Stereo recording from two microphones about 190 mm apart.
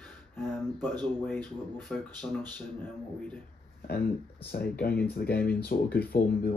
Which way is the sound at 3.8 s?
55° left (ahead or behind).